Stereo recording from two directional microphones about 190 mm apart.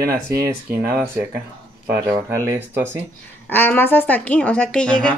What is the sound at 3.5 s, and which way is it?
A woman's voice, 10° left (ahead or behind).